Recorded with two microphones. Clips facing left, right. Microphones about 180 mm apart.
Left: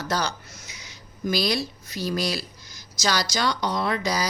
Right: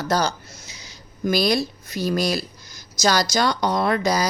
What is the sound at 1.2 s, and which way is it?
A woman's voice, 50° right (ahead or behind).